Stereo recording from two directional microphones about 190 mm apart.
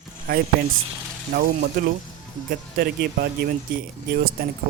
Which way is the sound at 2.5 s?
50° right (ahead or behind).